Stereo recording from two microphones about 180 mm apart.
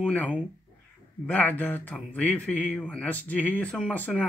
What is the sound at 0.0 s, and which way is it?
Speech, 10° left (ahead or behind).